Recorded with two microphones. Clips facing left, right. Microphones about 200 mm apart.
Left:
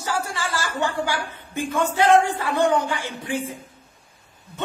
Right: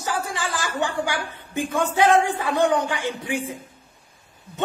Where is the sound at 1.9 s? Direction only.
15° right (ahead or behind).